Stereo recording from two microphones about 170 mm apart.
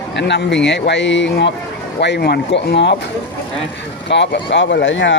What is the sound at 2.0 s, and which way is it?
Speech, 80° left.